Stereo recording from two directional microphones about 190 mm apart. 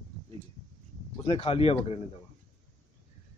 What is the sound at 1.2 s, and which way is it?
Speech, 30° left (ahead or behind).